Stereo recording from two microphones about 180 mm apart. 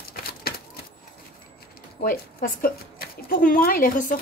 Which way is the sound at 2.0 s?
50° left (ahead or behind).